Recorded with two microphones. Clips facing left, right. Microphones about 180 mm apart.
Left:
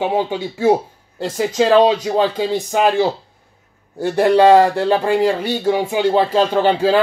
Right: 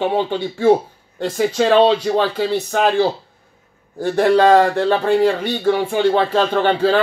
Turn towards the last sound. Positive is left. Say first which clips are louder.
# left 1 dB
turn(degrees=10)  # may be behind; listen again after turning